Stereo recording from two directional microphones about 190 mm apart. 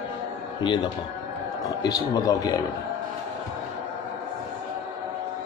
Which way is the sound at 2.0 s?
20° left (ahead or behind).